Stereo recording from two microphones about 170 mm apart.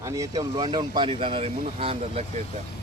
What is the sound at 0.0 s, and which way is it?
Speech, 20° right (ahead or behind).